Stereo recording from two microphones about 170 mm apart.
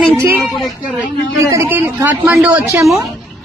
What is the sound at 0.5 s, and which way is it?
Speech, centre (ahead or behind).